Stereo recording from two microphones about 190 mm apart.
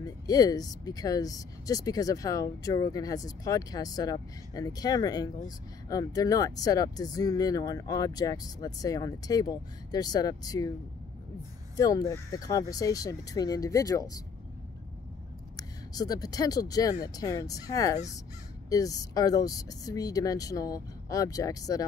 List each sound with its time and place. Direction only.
0.0 s speech: 20° left (ahead or behind)
11.7 s speech: 20° left (ahead or behind)
15.5 s speech: 20° left (ahead or behind)